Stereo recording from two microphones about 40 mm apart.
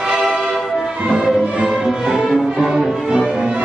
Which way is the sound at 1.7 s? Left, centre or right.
Centre.